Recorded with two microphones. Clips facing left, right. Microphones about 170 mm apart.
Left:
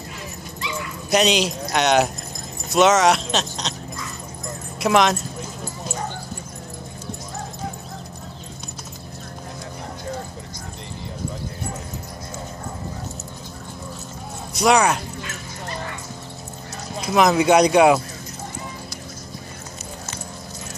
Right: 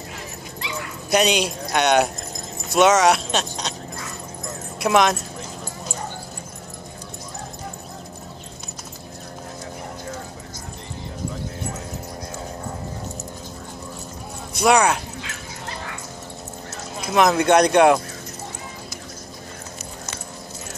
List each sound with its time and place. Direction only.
1.1 s speech: centre (ahead or behind)
4.7 s speech: centre (ahead or behind)
14.5 s speech: centre (ahead or behind)
17.0 s speech: centre (ahead or behind)